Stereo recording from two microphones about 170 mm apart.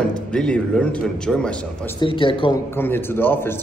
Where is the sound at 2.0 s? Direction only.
30° left (ahead or behind).